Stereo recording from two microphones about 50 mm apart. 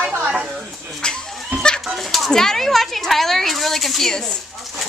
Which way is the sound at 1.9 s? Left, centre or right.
Centre.